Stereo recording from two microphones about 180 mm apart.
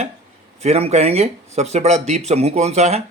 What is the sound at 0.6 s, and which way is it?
Speech, 35° right (ahead or behind).